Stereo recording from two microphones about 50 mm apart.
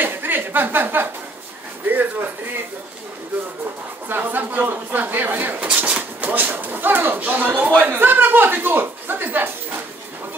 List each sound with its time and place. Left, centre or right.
0.0 s a sound: right
1.9 s speech: right
4.1 s speech: right